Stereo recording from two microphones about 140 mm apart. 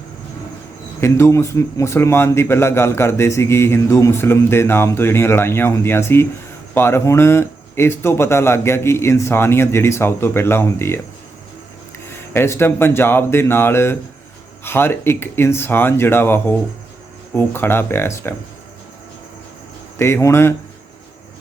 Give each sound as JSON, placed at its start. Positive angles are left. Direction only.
{"t": 1.0, "sound": "a man's voice", "side_deg": 20}
{"t": 12.3, "sound": "a man's voice", "side_deg": 15}
{"t": 20.0, "sound": "a man's voice", "side_deg": 20}